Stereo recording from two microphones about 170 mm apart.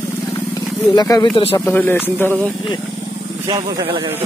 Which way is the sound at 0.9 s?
20° left (ahead or behind).